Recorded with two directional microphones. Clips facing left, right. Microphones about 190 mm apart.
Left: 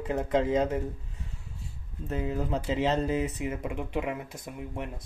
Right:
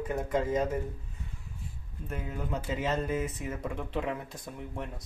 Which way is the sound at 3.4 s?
15° left (ahead or behind).